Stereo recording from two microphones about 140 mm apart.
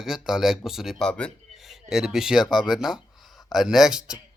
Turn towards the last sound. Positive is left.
turn(degrees=-5)  # may be behind; listen again after turning